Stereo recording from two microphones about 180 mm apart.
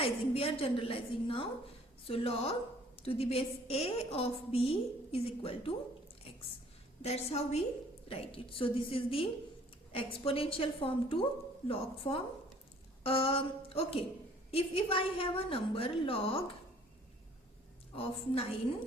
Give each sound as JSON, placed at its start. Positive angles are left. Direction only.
{"t": 0.0, "sound": "a woman's voice", "side_deg": 30}
{"t": 7.0, "sound": "a woman's voice", "side_deg": 35}
{"t": 17.9, "sound": "a woman's voice", "side_deg": 30}